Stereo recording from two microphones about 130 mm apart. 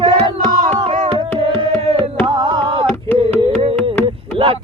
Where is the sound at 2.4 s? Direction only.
40° right (ahead or behind).